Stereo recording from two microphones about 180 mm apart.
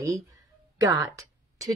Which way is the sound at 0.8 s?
20° right (ahead or behind).